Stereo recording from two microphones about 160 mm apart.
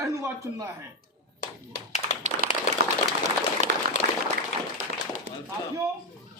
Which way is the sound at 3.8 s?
70° right (ahead or behind).